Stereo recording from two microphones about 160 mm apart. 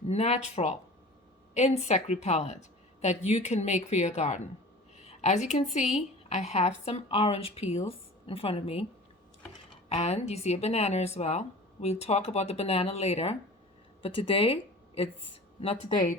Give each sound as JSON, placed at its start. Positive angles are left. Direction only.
{"t": 0.1, "sound": "speech", "side_deg": 45}
{"t": 4.9, "sound": "a sound", "side_deg": 45}
{"t": 5.7, "sound": "a woman's voice", "side_deg": 45}
{"t": 9.9, "sound": "a woman's voice", "side_deg": 45}